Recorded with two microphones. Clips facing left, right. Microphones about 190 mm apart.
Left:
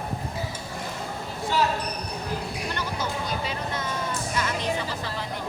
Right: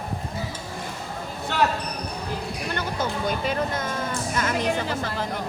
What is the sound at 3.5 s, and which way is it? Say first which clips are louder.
Vehicle: right 5 dB; 50° right (ahead or behind).